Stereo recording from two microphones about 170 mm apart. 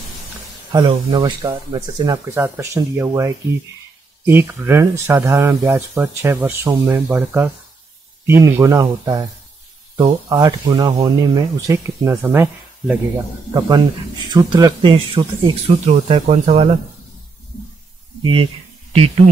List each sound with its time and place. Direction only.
0.7 s speech: 25° right (ahead or behind)
13.5 s speech: 25° right (ahead or behind)
15.9 s speech: 40° right (ahead or behind)
18.2 s speech: 30° right (ahead or behind)